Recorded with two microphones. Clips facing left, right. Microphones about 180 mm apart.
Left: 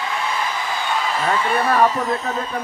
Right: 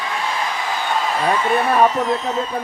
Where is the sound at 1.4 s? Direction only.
25° right (ahead or behind).